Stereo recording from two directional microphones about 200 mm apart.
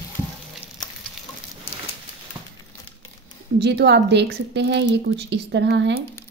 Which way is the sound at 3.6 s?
55° right (ahead or behind).